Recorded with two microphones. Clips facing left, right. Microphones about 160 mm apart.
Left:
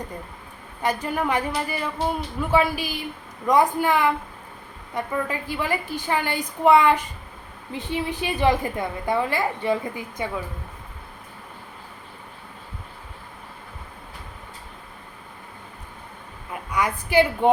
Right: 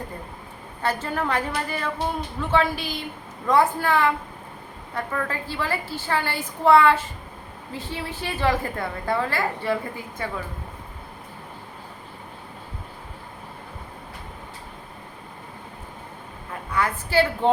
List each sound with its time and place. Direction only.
0.8 s a woman's voice: 15° left (ahead or behind)
16.5 s a woman's voice: 15° left (ahead or behind)